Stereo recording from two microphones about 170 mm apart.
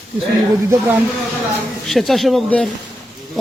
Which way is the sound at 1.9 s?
Centre (ahead or behind).